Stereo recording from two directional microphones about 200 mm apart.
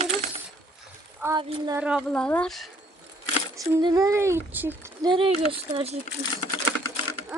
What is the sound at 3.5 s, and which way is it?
Speech, 20° right (ahead or behind).